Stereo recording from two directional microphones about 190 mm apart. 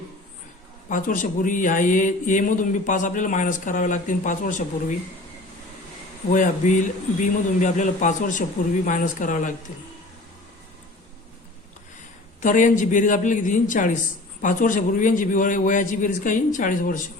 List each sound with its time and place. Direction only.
0.9 s speech: 45° left (ahead or behind)
6.3 s speech: 40° left (ahead or behind)
12.4 s speech: 40° left (ahead or behind)